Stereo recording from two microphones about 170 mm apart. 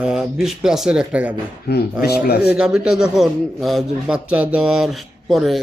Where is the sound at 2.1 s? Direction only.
70° left (ahead or behind).